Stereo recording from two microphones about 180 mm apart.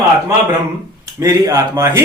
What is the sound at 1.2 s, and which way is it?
Speech, 15° right (ahead or behind).